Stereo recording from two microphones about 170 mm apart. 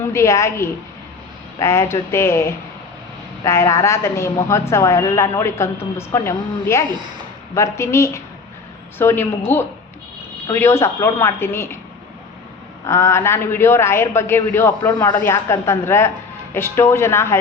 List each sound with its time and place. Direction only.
0.1 s a woman's voice: 15° left (ahead or behind)
12.8 s a woman's voice: 15° left (ahead or behind)